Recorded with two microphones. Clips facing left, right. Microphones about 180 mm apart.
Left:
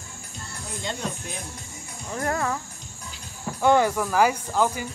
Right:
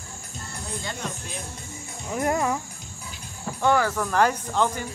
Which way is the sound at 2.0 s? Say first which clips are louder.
Right 3 dB; 15° right (ahead or behind).